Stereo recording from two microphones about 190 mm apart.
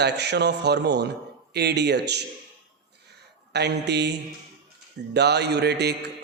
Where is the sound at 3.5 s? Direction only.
60° right (ahead or behind).